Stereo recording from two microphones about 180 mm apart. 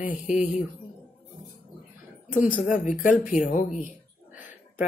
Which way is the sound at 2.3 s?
45° left (ahead or behind).